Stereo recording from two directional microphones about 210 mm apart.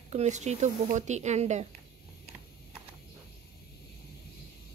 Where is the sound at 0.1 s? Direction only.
35° right (ahead or behind).